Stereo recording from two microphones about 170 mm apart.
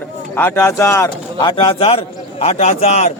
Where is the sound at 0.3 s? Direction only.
15° left (ahead or behind).